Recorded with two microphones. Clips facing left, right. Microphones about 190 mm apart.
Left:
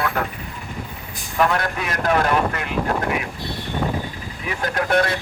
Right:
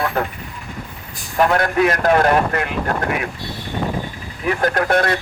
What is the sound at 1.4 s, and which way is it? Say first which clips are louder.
Speech: right 7 dB; 55° right (ahead or behind).